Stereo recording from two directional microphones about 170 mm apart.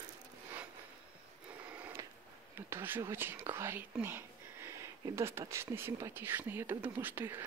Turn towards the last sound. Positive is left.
turn(degrees=-10)  # may be behind; listen again after turning